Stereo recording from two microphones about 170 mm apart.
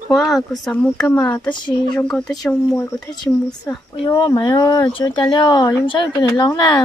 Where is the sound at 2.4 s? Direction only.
20° left (ahead or behind).